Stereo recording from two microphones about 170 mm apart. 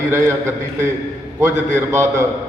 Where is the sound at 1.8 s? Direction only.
15° right (ahead or behind).